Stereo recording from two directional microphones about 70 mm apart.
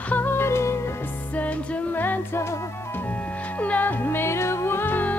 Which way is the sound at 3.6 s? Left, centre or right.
Left.